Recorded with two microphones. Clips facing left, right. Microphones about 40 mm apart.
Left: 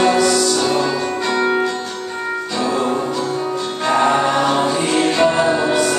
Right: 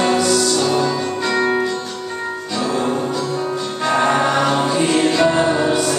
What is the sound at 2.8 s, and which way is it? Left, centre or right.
Music, centre.